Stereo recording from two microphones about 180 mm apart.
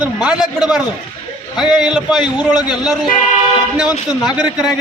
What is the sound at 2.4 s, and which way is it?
Speech, 25° left (ahead or behind).